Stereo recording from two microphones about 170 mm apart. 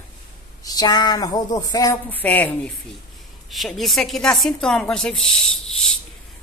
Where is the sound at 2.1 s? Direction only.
10° left (ahead or behind).